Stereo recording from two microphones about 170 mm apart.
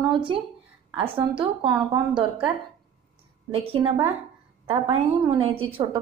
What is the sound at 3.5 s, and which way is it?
A woman's voice, 35° right (ahead or behind).